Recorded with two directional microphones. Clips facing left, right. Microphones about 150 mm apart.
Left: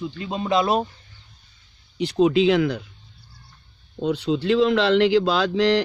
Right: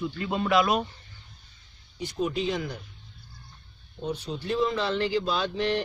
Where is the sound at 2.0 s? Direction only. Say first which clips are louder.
Left 11 dB; 85° left.